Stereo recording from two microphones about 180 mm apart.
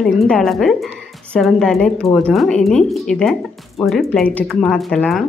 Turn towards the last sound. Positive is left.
turn(degrees=0)  # may be behind; listen again after turning